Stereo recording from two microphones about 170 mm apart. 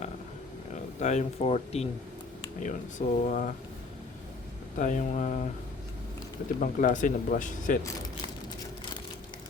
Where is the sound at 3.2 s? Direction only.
45° left (ahead or behind).